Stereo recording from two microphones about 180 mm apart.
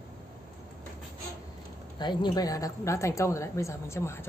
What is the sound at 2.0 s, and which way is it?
A woman's voice, 25° left (ahead or behind).